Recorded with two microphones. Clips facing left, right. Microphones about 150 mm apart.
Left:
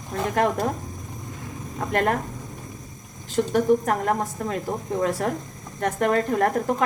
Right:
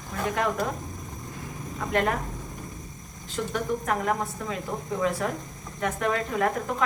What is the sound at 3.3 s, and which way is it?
A woman's voice, 40° left (ahead or behind).